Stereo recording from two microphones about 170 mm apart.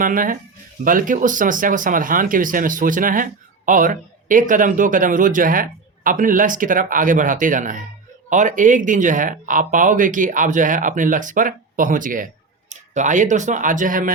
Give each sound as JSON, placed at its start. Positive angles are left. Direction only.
{"t": 0.0, "sound": "speech", "side_deg": -55}